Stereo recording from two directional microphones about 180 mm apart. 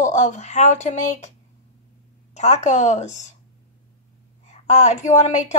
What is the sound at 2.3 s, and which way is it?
Speech, 40° left (ahead or behind).